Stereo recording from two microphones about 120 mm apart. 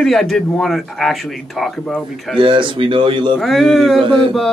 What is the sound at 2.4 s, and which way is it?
Speech, 45° right (ahead or behind).